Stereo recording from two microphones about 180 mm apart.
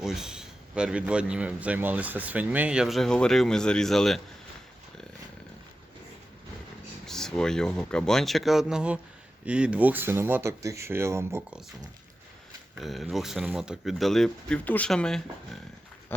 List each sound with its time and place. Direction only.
0.0 s a man's voice: centre (ahead or behind)
7.1 s a man's voice: 5° left (ahead or behind); by 11.6 s 15° right (ahead or behind)
12.8 s a man's voice: centre (ahead or behind)